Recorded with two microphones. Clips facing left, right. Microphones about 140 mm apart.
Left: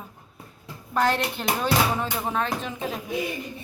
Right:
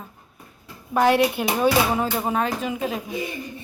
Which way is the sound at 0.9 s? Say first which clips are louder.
Right 6 dB; 10° right (ahead or behind).